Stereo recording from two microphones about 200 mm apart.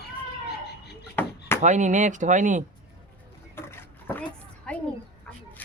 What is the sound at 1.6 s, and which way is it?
Speech, 40° right (ahead or behind).